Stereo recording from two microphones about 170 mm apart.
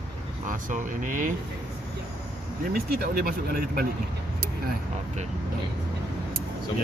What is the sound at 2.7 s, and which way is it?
Speech, 65° right (ahead or behind).